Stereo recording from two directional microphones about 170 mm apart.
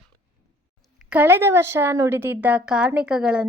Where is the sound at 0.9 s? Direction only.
10° right (ahead or behind).